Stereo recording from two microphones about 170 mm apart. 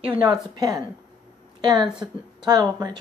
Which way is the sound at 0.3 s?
20° right (ahead or behind).